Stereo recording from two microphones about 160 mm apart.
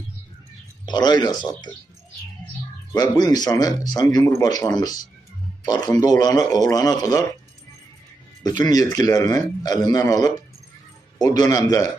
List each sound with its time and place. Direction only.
0.9 s speech: 25° left (ahead or behind)
2.9 s speech: 25° left (ahead or behind)
8.4 s speech: 25° left (ahead or behind)